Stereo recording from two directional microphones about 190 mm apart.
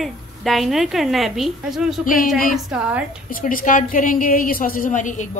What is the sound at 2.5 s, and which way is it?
Speech, 5° right (ahead or behind).